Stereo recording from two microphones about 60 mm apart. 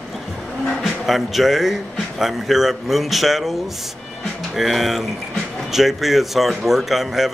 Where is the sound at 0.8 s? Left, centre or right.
Centre.